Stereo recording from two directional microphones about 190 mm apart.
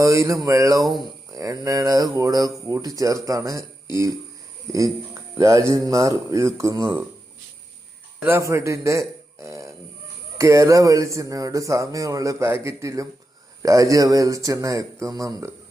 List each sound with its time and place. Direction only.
0.0 s speech: 15° right (ahead or behind)
0.8 s speech: centre (ahead or behind)
1.3 s speech: 20° right (ahead or behind)
5.4 s speech: 15° right (ahead or behind)
8.2 s a man's voice: 15° right (ahead or behind)